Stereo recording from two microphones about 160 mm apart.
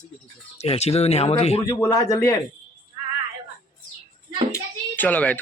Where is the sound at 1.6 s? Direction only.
20° left (ahead or behind).